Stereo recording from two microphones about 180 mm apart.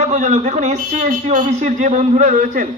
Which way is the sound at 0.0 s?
40° right (ahead or behind).